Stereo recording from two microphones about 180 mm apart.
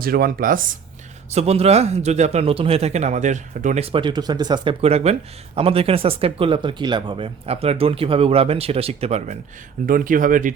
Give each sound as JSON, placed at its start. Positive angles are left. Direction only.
{"t": 0.0, "sound": "speech", "side_deg": -55}
{"t": 1.3, "sound": "speech", "side_deg": -35}
{"t": 9.8, "sound": "speech", "side_deg": -50}